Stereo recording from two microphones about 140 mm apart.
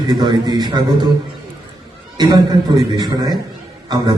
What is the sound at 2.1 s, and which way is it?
A man's voice, 30° right (ahead or behind).